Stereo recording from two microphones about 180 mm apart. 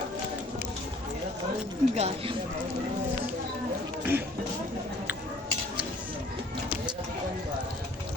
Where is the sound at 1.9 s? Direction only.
30° right (ahead or behind).